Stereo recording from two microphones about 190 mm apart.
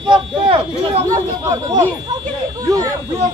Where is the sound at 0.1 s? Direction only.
30° right (ahead or behind).